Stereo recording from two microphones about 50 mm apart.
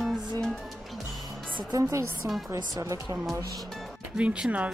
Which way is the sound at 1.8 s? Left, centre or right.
Right.